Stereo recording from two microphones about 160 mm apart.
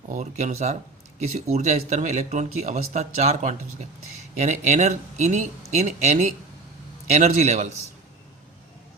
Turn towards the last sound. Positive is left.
turn(degrees=-45)  # may be behind; listen again after turning